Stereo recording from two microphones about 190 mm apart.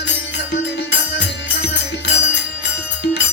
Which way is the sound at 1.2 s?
70° left (ahead or behind).